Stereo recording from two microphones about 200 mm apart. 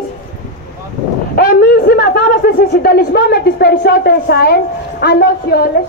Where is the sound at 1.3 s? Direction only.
45° left (ahead or behind).